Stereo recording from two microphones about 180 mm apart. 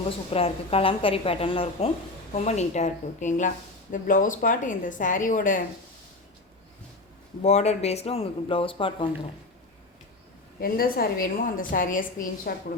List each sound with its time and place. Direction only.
0.3 s a woman's voice: 35° left (ahead or behind)
7.4 s speech: 40° left (ahead or behind)
10.6 s a woman's voice: 55° left (ahead or behind)